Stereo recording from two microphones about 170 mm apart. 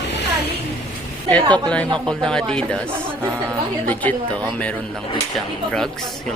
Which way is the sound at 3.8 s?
10° left (ahead or behind).